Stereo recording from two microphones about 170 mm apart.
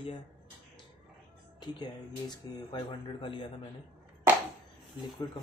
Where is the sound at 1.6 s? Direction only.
25° left (ahead or behind).